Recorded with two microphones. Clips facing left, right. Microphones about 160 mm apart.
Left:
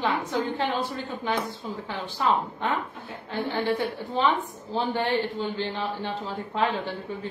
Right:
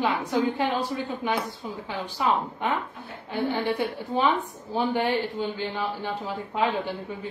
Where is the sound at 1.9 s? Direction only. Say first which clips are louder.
Even; 10° right (ahead or behind).